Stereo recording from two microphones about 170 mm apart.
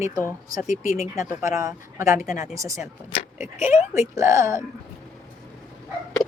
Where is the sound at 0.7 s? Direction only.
50° left (ahead or behind).